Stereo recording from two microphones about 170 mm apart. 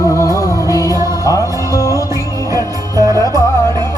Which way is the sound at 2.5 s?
20° right (ahead or behind).